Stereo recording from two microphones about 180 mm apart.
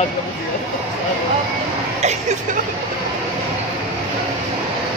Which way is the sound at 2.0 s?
40° right (ahead or behind).